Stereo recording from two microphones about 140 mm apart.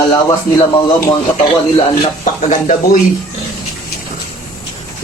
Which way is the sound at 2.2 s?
60° left (ahead or behind).